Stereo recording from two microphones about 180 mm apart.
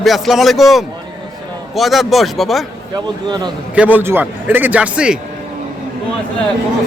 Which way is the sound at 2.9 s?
25° right (ahead or behind).